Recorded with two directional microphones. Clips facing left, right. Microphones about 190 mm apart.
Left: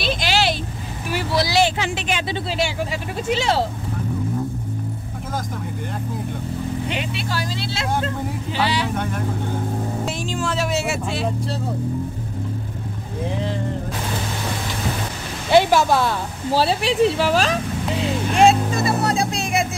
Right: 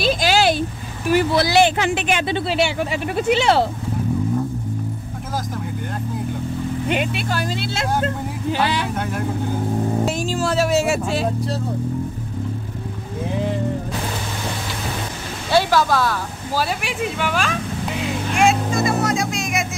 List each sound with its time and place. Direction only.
0.2 s vehicle: 45° right (ahead or behind)
1.1 s speech: 55° right (ahead or behind)
6.9 s speech: 50° right (ahead or behind)
8.9 s speech: 5° right (ahead or behind)
10.0 s speech: 40° right (ahead or behind)
15.5 s speech: 20° left (ahead or behind)
18.3 s vehicle: 35° left (ahead or behind)